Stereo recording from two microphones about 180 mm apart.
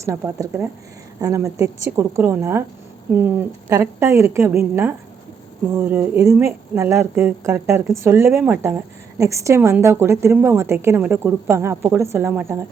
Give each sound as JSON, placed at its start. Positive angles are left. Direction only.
{"t": 0.0, "sound": "a woman's voice", "side_deg": -15}